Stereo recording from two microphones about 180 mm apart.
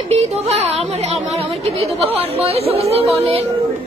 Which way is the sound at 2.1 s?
35° right (ahead or behind).